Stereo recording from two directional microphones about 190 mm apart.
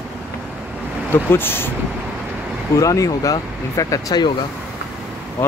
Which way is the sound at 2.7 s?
15° left (ahead or behind).